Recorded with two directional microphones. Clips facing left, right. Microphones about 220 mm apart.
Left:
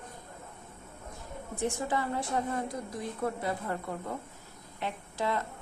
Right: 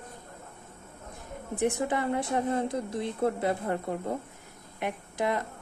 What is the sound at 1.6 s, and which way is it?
A woman's voice, 20° right (ahead or behind).